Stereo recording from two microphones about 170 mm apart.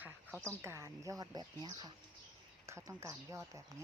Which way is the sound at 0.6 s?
15° right (ahead or behind).